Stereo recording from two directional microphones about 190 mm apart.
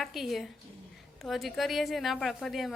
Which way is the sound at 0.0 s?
Centre (ahead or behind).